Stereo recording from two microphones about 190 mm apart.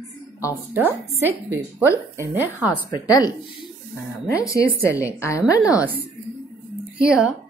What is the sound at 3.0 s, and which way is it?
Speech, 20° left (ahead or behind).